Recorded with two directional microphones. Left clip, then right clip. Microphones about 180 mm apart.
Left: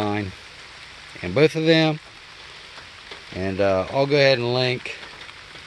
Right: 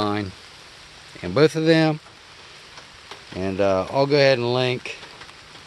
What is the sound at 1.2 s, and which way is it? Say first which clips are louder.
Speech: even; 5° right (ahead or behind).